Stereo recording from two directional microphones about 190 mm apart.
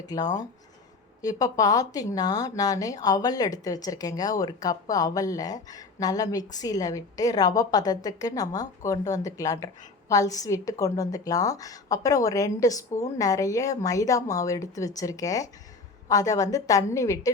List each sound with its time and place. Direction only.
0.0 s a woman's voice: 20° left (ahead or behind)